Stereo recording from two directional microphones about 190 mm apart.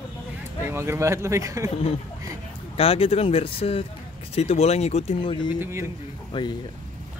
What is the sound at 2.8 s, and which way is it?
Speech, 30° left (ahead or behind).